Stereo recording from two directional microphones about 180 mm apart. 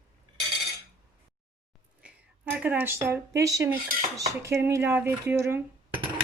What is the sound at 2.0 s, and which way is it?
Speech, 5° right (ahead or behind).